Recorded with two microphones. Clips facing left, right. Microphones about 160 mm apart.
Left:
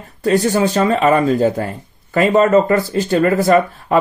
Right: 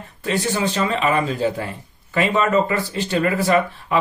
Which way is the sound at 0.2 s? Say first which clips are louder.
Left 7 dB; 40° left (ahead or behind).